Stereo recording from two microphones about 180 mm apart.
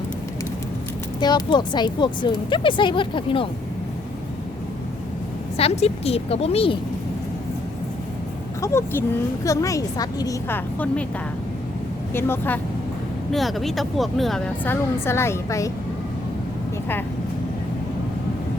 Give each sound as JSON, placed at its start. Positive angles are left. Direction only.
{"t": 1.2, "sound": "speech", "side_deg": 25}
{"t": 5.5, "sound": "a woman's voice", "side_deg": 35}
{"t": 8.6, "sound": "a woman's voice", "side_deg": 15}
{"t": 12.1, "sound": "a woman's voice", "side_deg": 10}
{"t": 13.3, "sound": "speech", "side_deg": 0}